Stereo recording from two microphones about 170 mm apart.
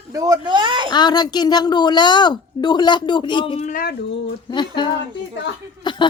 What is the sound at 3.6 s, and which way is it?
Speech, 45° left (ahead or behind).